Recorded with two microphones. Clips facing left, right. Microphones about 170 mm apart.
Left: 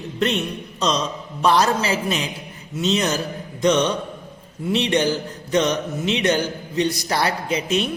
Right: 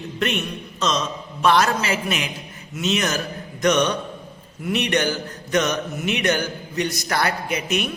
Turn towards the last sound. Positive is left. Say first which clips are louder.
# left 2 dB
turn(degrees=30)  # may be behind; listen again after turning